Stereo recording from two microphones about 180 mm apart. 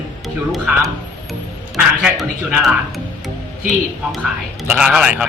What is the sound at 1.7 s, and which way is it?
Speech, 5° right (ahead or behind).